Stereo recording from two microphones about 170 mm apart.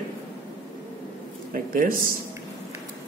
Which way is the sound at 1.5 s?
55° right (ahead or behind).